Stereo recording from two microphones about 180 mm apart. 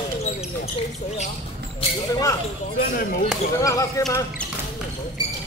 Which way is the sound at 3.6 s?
15° left (ahead or behind).